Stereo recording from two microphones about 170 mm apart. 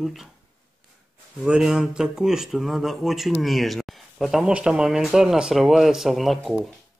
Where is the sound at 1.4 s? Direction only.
5° right (ahead or behind).